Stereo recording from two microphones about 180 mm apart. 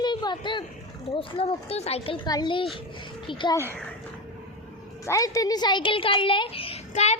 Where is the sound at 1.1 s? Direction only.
30° left (ahead or behind).